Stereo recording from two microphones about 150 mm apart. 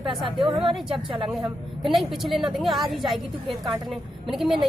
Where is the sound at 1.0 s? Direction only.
35° right (ahead or behind).